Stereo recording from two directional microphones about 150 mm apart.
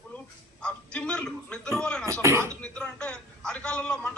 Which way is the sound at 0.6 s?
5° left (ahead or behind).